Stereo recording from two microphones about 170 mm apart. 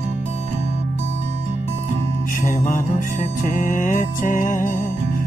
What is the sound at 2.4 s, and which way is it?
Music, 50° left (ahead or behind).